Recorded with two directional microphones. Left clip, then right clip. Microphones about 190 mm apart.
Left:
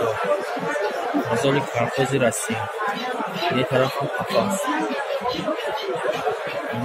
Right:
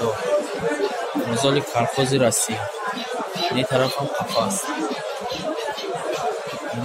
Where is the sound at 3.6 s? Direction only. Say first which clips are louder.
Even; centre (ahead or behind).